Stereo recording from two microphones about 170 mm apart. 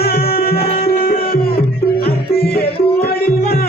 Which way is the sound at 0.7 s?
35° left (ahead or behind).